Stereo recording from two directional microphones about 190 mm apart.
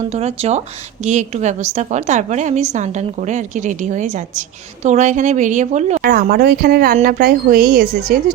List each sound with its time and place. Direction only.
0.1 s a woman's voice: 35° right (ahead or behind)
6.0 s a woman's voice: 50° right (ahead or behind)